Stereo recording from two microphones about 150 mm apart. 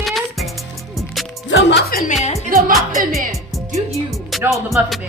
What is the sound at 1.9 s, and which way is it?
Speech, 75° left (ahead or behind).